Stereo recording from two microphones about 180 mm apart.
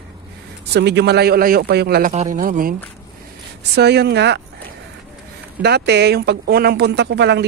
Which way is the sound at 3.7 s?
65° right (ahead or behind).